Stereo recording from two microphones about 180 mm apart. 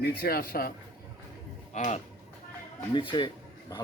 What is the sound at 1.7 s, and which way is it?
Speech, 40° left (ahead or behind).